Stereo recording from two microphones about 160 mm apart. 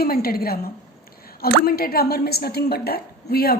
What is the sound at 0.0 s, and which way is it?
A woman's voice, 70° left (ahead or behind).